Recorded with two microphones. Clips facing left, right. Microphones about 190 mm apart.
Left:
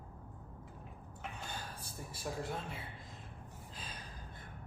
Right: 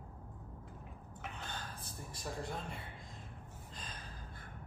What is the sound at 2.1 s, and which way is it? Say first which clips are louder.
Speech: left 2 dB; centre (ahead or behind).